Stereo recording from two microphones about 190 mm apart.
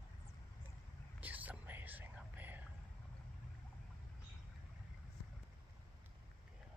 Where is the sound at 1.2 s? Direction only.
10° right (ahead or behind).